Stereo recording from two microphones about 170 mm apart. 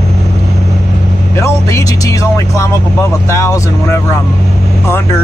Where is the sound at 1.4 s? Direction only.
20° left (ahead or behind).